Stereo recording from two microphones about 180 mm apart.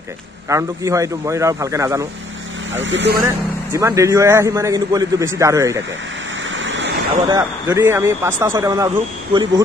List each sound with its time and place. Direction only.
0.5 s a man's voice: 15° right (ahead or behind)
2.7 s speech: 90° right
3.7 s a man's voice: 20° right (ahead or behind)
6.5 s a sound: 90° right
7.2 s a man's voice: 15° right (ahead or behind)